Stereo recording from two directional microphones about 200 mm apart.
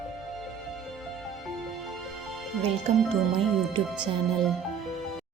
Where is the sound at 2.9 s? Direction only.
30° right (ahead or behind).